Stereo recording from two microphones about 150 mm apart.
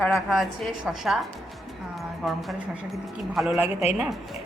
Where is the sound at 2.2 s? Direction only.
Centre (ahead or behind).